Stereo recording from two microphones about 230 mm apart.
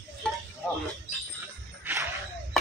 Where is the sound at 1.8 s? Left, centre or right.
Centre.